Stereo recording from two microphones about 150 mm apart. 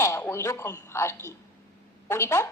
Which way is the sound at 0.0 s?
15° left (ahead or behind).